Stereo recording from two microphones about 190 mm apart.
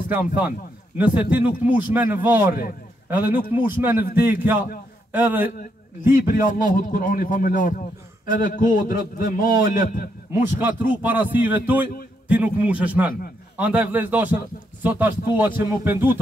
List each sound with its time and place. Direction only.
0.1 s a man's voice: 10° right (ahead or behind)
6.2 s a man's voice: 45° left (ahead or behind)
10.3 s a man's voice: 10° right (ahead or behind)